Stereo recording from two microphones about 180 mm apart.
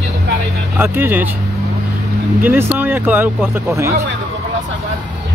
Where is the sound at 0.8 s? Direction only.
10° right (ahead or behind).